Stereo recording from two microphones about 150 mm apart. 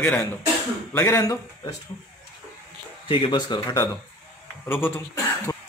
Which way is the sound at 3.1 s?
35° left (ahead or behind).